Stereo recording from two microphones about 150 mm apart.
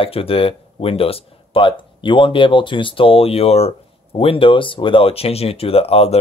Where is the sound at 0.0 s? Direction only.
40° left (ahead or behind).